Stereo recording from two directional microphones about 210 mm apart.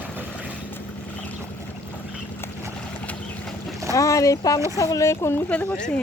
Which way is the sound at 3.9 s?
15° left (ahead or behind).